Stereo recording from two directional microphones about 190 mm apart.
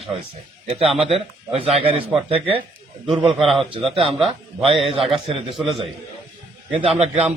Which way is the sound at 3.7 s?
30° right (ahead or behind).